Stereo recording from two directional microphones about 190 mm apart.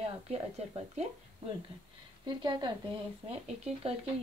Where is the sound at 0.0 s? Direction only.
35° right (ahead or behind).